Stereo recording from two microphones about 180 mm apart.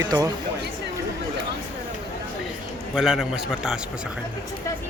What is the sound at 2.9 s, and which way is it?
Speech, centre (ahead or behind).